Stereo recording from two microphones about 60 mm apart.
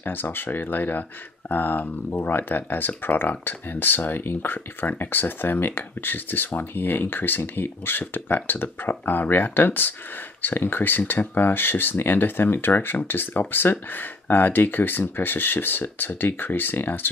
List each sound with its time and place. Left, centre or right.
0.0 s speech: left